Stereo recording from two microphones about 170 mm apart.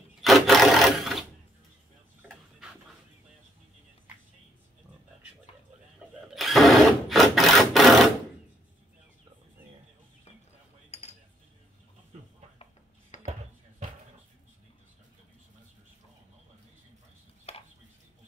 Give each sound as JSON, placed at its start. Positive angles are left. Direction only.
{"t": 0.2, "sound": "a sound", "side_deg": 0}
{"t": 6.3, "sound": "sewing machine", "side_deg": 0}
{"t": 10.9, "sound": "cutlery", "side_deg": 40}
{"t": 13.1, "sound": "dishes", "side_deg": 45}
{"t": 17.5, "sound": "chopping", "side_deg": 35}